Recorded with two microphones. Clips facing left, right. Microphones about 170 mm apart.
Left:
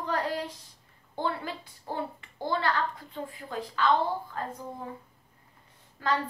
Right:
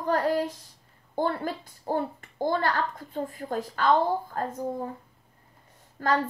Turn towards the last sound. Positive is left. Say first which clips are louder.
# right 3 dB
turn(degrees=-45)  # may be behind; listen again after turning